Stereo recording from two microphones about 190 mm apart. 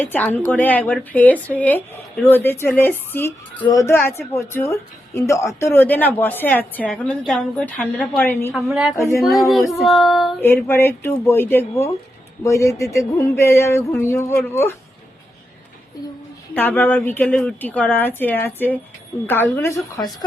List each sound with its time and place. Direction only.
0.0 s a woman's voice: 10° left (ahead or behind)
8.5 s child singing: 5° right (ahead or behind)
8.9 s a woman's voice: 15° left (ahead or behind)
9.1 s child singing: centre (ahead or behind)
10.4 s a woman's voice: 10° left (ahead or behind)
16.6 s a woman's voice: 10° left (ahead or behind)